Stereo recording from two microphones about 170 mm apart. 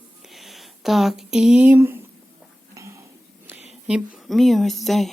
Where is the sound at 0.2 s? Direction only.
Centre (ahead or behind); by 3.0 s 15° right (ahead or behind).